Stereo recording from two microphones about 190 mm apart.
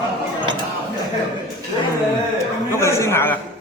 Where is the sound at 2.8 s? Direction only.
15° left (ahead or behind).